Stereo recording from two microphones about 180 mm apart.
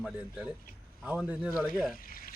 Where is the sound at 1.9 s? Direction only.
55° left (ahead or behind).